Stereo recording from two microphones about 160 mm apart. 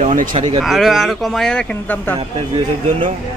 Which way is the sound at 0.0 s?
55° right (ahead or behind).